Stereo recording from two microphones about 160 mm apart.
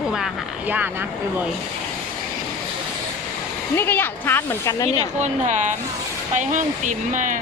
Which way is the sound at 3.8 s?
15° left (ahead or behind).